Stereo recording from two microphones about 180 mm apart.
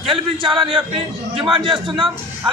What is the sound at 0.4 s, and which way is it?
A man's voice, 25° right (ahead or behind).